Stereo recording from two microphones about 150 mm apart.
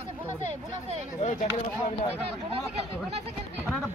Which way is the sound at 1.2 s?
50° left (ahead or behind).